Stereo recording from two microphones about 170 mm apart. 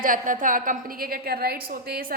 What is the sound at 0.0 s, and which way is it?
A woman's voice, 50° right (ahead or behind).